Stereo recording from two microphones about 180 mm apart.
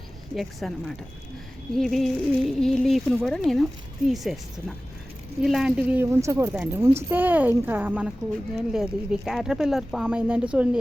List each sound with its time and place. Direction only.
0.3 s speech: centre (ahead or behind)
5.4 s a woman's voice: 5° right (ahead or behind)